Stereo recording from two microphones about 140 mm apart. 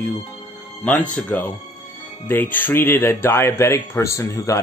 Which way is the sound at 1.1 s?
10° left (ahead or behind).